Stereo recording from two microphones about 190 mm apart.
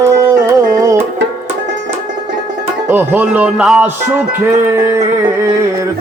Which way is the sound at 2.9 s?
10° right (ahead or behind).